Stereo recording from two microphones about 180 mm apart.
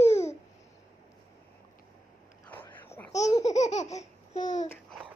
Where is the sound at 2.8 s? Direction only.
15° left (ahead or behind).